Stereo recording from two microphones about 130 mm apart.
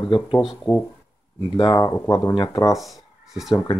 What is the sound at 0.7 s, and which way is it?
Speech, 20° left (ahead or behind).